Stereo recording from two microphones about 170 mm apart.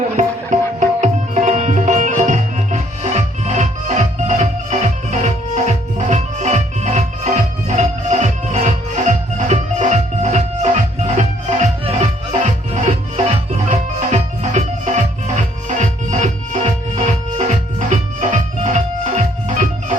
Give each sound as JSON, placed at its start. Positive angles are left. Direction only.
{"t": 0.8, "sound": "music", "side_deg": -45}